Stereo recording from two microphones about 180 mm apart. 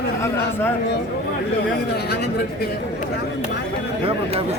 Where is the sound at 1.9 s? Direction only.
60° left (ahead or behind).